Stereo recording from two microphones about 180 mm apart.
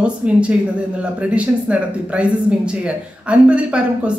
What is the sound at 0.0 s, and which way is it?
Speech, 5° right (ahead or behind).